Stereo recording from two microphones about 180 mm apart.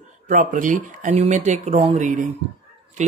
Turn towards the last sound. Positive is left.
turn(degrees=-40)  # may be behind; listen again after turning